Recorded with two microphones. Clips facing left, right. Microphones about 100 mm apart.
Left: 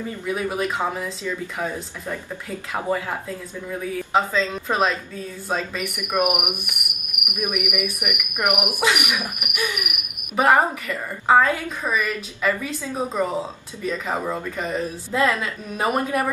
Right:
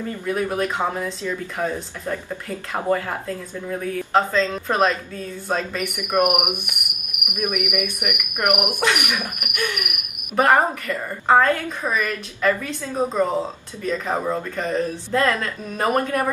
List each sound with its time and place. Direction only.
0.0 s speech: 5° left (ahead or behind)